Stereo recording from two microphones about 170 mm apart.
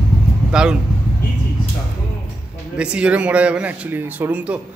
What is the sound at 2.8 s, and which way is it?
A man's voice, 5° right (ahead or behind).